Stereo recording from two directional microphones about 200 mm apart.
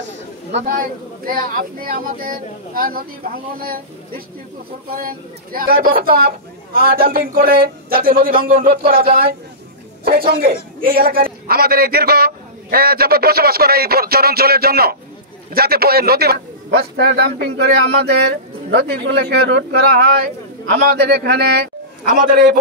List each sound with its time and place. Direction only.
0.7 s a man's voice: 45° right (ahead or behind)
20.7 s a man's voice: 55° right (ahead or behind)